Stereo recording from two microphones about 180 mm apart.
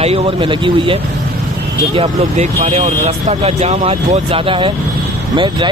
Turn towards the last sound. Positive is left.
turn(degrees=-30)  # may be behind; listen again after turning